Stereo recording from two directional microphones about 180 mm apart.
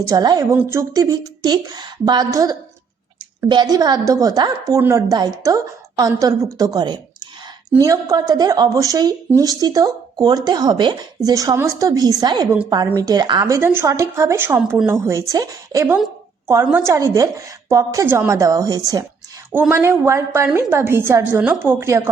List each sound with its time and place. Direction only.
0.1 s a woman's voice: 20° right (ahead or behind)